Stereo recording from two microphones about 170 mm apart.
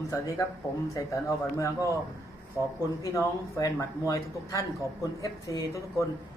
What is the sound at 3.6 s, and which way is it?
Speech, 20° left (ahead or behind).